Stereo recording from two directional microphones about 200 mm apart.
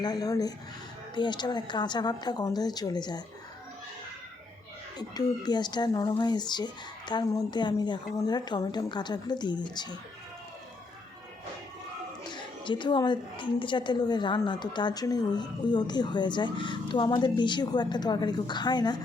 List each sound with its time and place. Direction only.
0.0 s a woman's voice: 20° left (ahead or behind)
4.9 s a woman's voice: 20° left (ahead or behind)
12.3 s a woman's voice: 25° left (ahead or behind)